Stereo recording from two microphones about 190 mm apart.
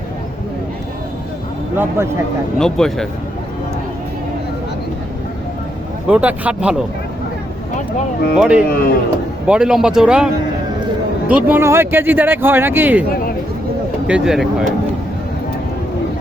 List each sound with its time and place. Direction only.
1.7 s speech: 10° right (ahead or behind)
2.6 s speech: 5° left (ahead or behind)
6.1 s speech: 5° right (ahead or behind)
8.4 s speech: 5° right (ahead or behind)
8.6 s speech: 50° left (ahead or behind)
9.5 s speech: 5° right (ahead or behind)
11.3 s speech: 10° right (ahead or behind)
14.1 s speech: 5° right (ahead or behind)